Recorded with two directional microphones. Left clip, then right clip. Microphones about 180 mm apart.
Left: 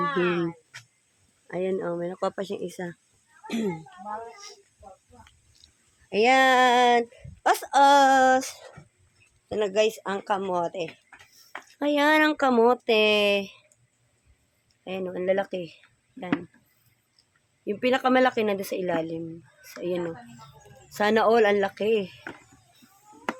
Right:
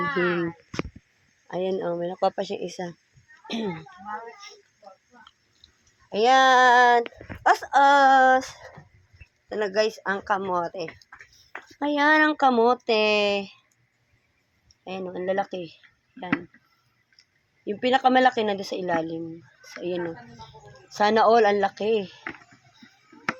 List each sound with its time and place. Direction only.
0.0 s speech: 10° left (ahead or behind)
3.4 s a child's voice: 20° left (ahead or behind)
4.0 s speech: 5° left (ahead or behind)
5.2 s a sound: 25° left (ahead or behind)
9.5 s speech: 15° left (ahead or behind)
11.8 s speech: 25° left (ahead or behind)
14.8 s speech: 10° left (ahead or behind)
17.7 s speech: 10° left (ahead or behind)